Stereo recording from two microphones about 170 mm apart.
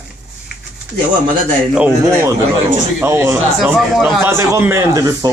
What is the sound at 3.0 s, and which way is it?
Speech, 15° right (ahead or behind).